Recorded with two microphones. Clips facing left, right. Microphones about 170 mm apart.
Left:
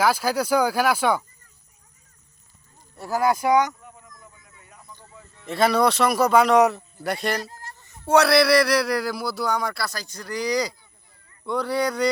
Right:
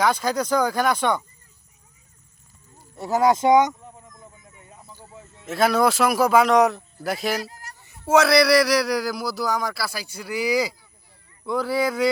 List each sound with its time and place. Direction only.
0.0 s speech: 5° left (ahead or behind)
2.9 s a sound: 20° right (ahead or behind)
5.5 s a man's voice: centre (ahead or behind)